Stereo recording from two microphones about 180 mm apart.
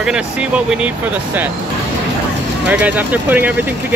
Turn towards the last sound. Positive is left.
turn(degrees=-10)  # may be behind; listen again after turning